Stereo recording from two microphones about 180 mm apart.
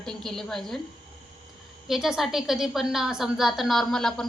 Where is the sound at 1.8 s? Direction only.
Centre (ahead or behind).